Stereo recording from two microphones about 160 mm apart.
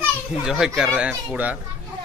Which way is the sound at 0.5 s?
Centre (ahead or behind).